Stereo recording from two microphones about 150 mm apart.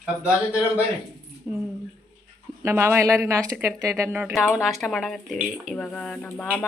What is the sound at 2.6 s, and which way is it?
Speech, 15° right (ahead or behind).